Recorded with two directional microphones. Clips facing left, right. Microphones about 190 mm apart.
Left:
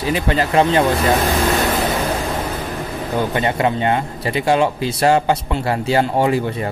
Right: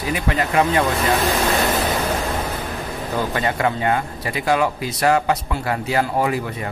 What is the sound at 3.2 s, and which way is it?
Speech, 25° left (ahead or behind).